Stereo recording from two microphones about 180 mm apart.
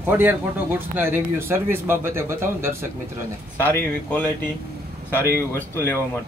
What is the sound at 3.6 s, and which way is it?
Speech, 10° left (ahead or behind).